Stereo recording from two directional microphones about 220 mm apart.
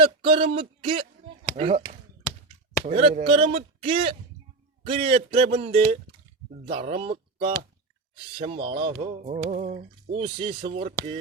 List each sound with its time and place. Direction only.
0.0 s speech: 25° right (ahead or behind)